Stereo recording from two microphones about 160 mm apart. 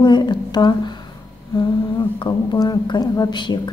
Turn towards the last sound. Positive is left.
turn(degrees=25)  # may be behind; listen again after turning